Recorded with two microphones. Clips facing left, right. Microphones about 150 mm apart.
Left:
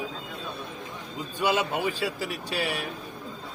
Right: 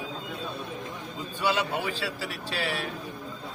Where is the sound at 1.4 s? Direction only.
20° left (ahead or behind).